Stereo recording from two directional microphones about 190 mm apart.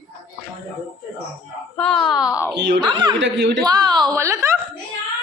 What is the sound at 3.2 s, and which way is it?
Speech, 65° right (ahead or behind).